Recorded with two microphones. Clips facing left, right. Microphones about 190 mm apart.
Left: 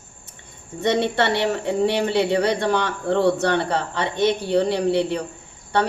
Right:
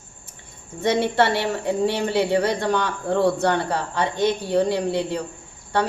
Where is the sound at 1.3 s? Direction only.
20° left (ahead or behind).